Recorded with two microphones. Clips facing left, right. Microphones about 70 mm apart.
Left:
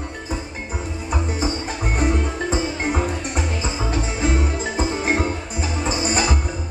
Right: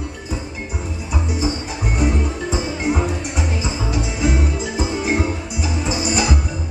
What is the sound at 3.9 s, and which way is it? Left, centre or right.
Music, left.